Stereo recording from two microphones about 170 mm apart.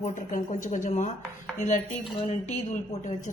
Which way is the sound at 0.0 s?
50° left (ahead or behind).